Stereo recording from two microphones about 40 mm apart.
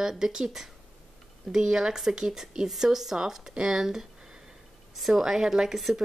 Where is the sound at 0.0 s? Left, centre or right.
Centre.